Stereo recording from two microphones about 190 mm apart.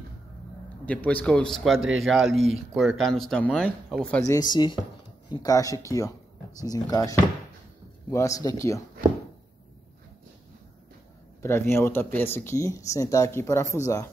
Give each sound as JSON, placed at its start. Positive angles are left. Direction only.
{"t": 0.8, "sound": "speech", "side_deg": 5}
{"t": 4.3, "sound": "speech", "side_deg": 20}
{"t": 11.4, "sound": "speech", "side_deg": 10}